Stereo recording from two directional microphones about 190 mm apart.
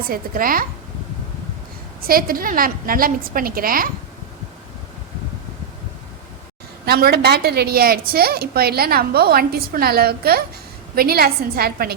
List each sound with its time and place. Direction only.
0.0 s a woman's voice: 50° right (ahead or behind)
2.0 s a woman's voice: 50° right (ahead or behind)
6.8 s a woman's voice: 55° right (ahead or behind)